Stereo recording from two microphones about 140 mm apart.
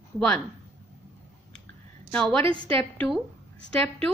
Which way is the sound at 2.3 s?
40° right (ahead or behind).